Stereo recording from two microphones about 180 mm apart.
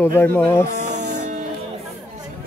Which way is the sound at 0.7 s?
40° right (ahead or behind).